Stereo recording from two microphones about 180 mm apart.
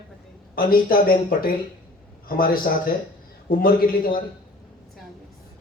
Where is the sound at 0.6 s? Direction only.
55° left (ahead or behind).